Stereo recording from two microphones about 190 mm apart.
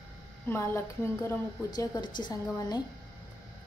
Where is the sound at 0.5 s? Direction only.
15° left (ahead or behind).